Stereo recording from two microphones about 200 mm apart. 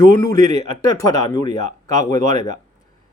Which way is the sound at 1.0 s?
20° left (ahead or behind).